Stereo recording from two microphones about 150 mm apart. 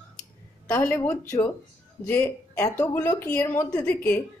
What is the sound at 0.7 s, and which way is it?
Speech, 15° left (ahead or behind).